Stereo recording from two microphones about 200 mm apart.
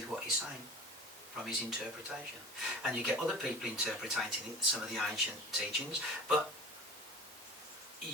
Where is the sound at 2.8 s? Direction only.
Centre (ahead or behind).